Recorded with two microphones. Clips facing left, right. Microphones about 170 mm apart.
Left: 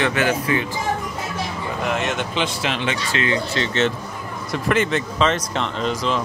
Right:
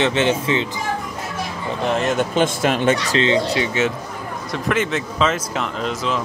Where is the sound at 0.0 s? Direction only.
25° right (ahead or behind).